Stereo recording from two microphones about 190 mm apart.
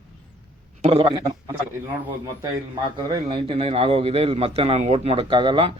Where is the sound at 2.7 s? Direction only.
20° right (ahead or behind).